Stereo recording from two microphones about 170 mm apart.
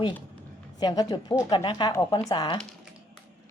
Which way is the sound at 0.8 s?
25° left (ahead or behind).